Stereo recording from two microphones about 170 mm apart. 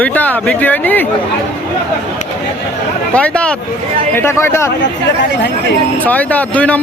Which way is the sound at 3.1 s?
5° left (ahead or behind).